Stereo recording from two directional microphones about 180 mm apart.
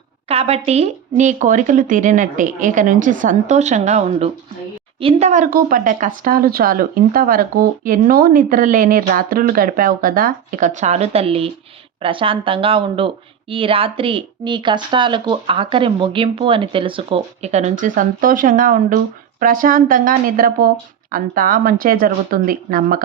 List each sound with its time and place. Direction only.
0.3 s speech: 35° right (ahead or behind); by 23.0 s 50° right (ahead or behind)